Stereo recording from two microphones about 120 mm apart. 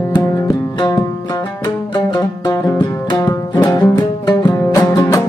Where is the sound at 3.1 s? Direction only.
35° left (ahead or behind).